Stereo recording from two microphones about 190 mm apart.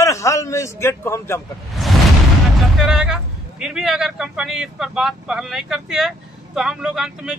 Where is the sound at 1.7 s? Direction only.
Centre (ahead or behind).